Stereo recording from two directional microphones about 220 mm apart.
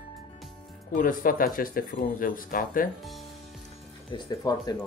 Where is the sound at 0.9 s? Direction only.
40° left (ahead or behind).